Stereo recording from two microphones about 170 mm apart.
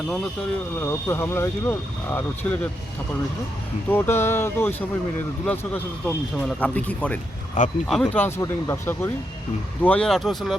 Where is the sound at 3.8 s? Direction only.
10° left (ahead or behind).